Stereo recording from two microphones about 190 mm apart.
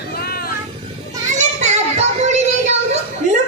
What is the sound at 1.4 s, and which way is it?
Child singing, 35° right (ahead or behind).